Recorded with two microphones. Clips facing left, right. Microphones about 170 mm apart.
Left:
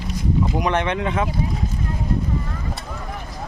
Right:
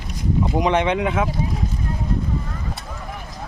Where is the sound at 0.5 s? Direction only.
15° right (ahead or behind).